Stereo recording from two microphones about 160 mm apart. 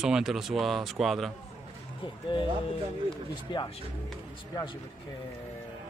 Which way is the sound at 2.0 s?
30° left (ahead or behind).